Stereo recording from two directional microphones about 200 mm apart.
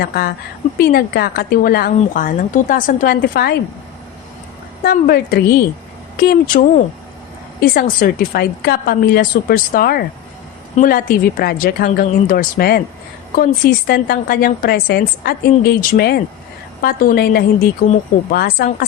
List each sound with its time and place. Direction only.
0.0 s a woman's voice: 50° left (ahead or behind)
4.8 s a woman's voice: 50° left (ahead or behind)